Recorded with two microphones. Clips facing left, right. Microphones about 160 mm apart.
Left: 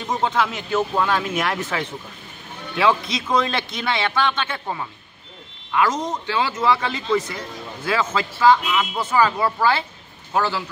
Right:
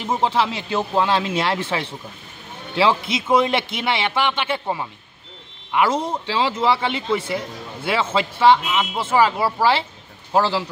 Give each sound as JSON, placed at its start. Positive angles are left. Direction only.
{"t": 0.2, "sound": "a man's voice", "side_deg": -25}